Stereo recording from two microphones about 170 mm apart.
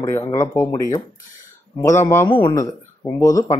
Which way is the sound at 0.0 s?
15° left (ahead or behind).